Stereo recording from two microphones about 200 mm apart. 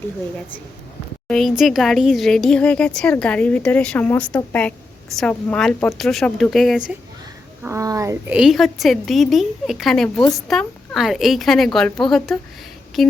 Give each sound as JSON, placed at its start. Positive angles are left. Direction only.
{"t": 1.3, "sound": "speech", "side_deg": 0}
{"t": 7.6, "sound": "speech", "side_deg": -15}
{"t": 8.3, "sound": "speech", "side_deg": -5}